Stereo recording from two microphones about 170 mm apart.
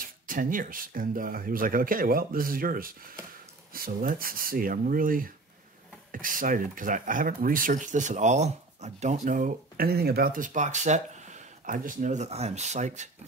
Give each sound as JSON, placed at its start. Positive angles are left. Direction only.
{"t": 0.0, "sound": "speech", "side_deg": -50}